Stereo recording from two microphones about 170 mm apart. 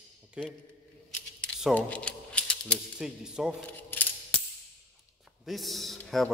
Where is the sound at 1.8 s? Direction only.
10° left (ahead or behind).